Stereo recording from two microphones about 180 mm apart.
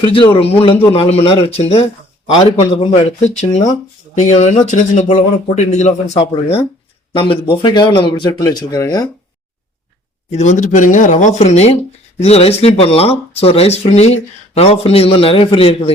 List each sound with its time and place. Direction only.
0.0 s a man's voice: 30° left (ahead or behind)
10.3 s a man's voice: 40° left (ahead or behind)